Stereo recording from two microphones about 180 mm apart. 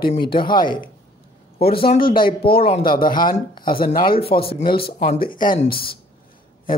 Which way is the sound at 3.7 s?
55° left (ahead or behind).